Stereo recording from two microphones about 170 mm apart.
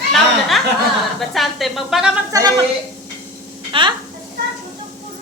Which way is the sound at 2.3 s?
20° right (ahead or behind).